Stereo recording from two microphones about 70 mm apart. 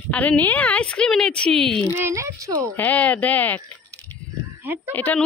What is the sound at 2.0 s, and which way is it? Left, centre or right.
Speech, right.